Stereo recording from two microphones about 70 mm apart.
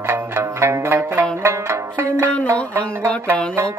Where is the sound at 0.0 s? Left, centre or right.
Right.